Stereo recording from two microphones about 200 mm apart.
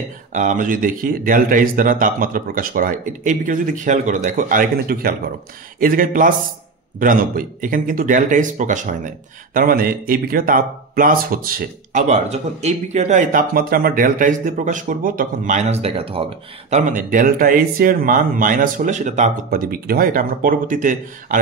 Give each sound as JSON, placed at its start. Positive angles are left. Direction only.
{"t": 0.3, "sound": "speech", "side_deg": -40}
{"t": 16.7, "sound": "speech", "side_deg": -40}